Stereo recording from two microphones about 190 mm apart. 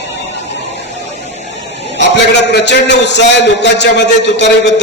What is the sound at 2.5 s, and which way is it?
A man's voice, 65° left (ahead or behind).